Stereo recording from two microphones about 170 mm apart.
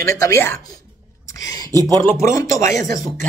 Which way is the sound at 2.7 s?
20° left (ahead or behind).